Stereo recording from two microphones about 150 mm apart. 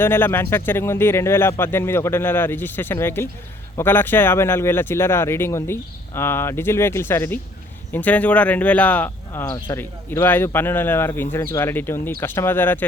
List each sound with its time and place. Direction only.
0.0 s speech: 15° left (ahead or behind)